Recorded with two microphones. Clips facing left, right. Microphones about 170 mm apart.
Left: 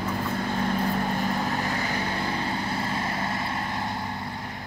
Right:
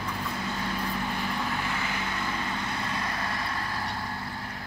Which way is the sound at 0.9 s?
45° left (ahead or behind).